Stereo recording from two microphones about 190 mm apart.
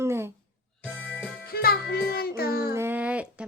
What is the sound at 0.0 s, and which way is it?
Music, 15° right (ahead or behind).